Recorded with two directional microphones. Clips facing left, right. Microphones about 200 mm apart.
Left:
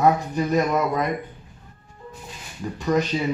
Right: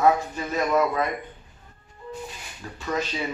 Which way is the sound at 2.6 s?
15° left (ahead or behind).